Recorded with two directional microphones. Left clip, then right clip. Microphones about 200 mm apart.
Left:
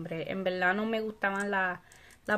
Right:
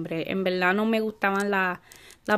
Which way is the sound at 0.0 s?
40° right (ahead or behind).